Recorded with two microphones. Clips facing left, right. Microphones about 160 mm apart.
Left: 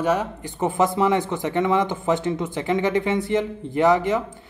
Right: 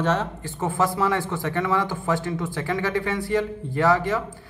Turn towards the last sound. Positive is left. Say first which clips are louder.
# left 3 dB
turn(degrees=20)  # may be behind; listen again after turning